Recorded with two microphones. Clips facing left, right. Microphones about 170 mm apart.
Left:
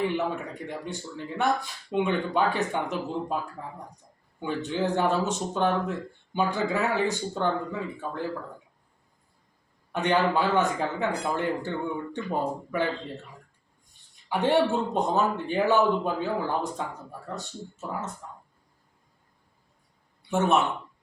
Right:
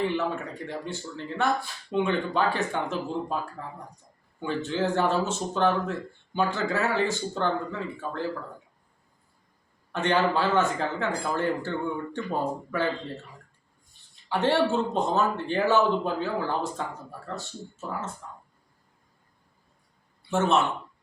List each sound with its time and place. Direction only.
0.0 s speech: 15° left (ahead or behind)
4.4 s speech: 15° left (ahead or behind)
9.9 s speech: 15° left (ahead or behind)
14.3 s speech: 15° left (ahead or behind)
20.3 s speech: 15° left (ahead or behind)